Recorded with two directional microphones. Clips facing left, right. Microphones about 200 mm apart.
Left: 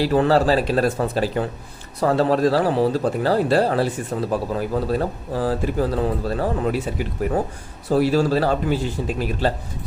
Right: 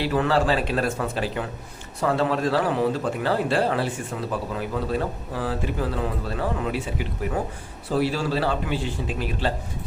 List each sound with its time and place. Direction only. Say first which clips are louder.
0.0 s a man's voice: left 5 dB; 40° left (ahead or behind)